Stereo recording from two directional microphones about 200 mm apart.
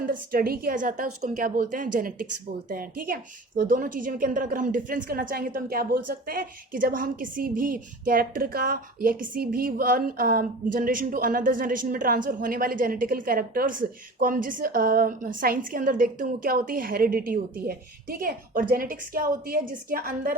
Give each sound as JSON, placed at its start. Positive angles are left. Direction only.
{"t": 0.0, "sound": "a woman's voice", "side_deg": -45}